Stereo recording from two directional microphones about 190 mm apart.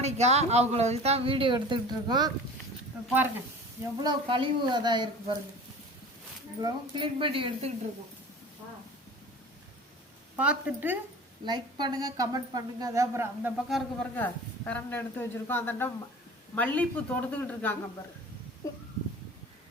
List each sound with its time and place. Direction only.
0.0 s speech: 35° right (ahead or behind)
3.9 s a woman's voice: 25° right (ahead or behind)
6.6 s a woman's voice: 25° right (ahead or behind)
10.3 s a woman's voice: 5° right (ahead or behind)
11.4 s a woman's voice: 20° right (ahead or behind)
13.7 s a man's voice: centre (ahead or behind); by 18.8 s 15° left (ahead or behind)